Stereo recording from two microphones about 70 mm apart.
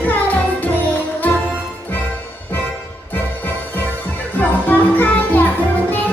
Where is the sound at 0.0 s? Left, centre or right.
Left.